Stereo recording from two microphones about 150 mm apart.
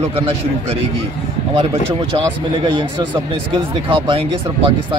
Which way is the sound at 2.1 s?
35° right (ahead or behind).